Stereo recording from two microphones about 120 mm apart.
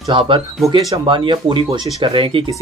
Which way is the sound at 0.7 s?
30° right (ahead or behind).